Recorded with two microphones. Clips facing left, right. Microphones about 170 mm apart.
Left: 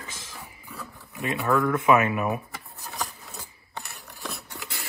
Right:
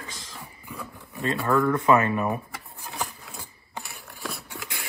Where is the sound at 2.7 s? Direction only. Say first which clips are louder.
Right 1 dB; 15° right (ahead or behind).